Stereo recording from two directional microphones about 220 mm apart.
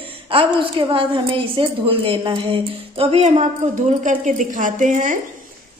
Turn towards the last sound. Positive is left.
turn(degrees=-35)  # may be behind; listen again after turning